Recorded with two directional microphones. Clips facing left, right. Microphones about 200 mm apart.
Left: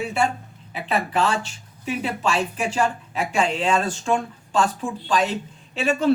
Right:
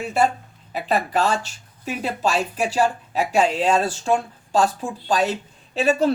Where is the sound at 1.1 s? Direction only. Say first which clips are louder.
Right 1 dB; 40° right (ahead or behind).